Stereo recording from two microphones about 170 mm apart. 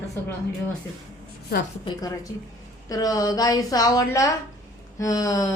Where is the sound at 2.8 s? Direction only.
20° left (ahead or behind).